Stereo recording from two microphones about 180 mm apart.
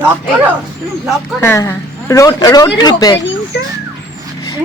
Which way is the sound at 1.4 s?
15° left (ahead or behind).